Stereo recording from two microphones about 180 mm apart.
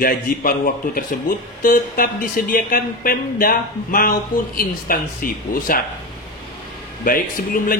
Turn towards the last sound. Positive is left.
turn(degrees=50)  # may be behind; listen again after turning